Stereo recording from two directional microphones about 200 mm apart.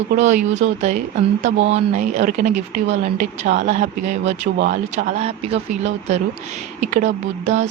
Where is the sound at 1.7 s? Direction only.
35° right (ahead or behind).